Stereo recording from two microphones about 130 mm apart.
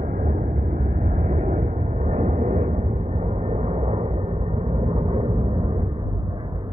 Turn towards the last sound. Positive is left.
turn(degrees=-45)  # may be behind; listen again after turning